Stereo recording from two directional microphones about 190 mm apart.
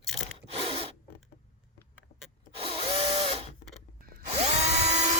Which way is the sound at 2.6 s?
30° right (ahead or behind).